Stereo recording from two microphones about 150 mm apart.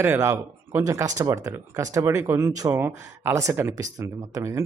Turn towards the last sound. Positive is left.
turn(degrees=-20)  # may be behind; listen again after turning